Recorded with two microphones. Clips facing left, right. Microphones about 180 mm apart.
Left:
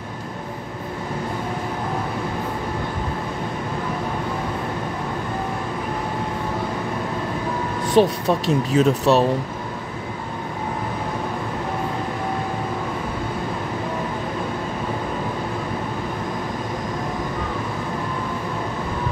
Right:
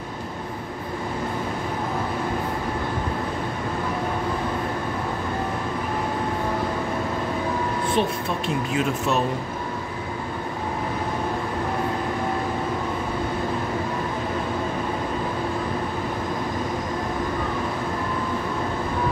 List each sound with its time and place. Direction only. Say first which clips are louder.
7.9 s speech: left 10 dB; 40° left (ahead or behind)